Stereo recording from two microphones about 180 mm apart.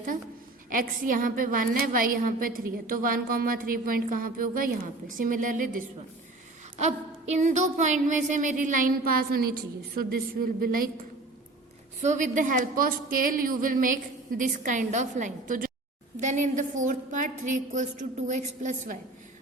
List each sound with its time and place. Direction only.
0.7 s a woman's voice: 50° right (ahead or behind)
11.9 s a woman's voice: 45° right (ahead or behind)